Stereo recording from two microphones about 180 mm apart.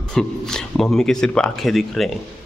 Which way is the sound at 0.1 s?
5° left (ahead or behind).